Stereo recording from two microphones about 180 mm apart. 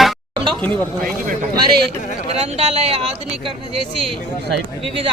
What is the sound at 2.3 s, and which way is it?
Speech, 35° right (ahead or behind).